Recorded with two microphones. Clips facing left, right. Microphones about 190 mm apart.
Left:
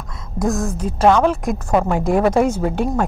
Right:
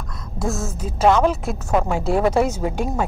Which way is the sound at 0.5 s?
5° right (ahead or behind).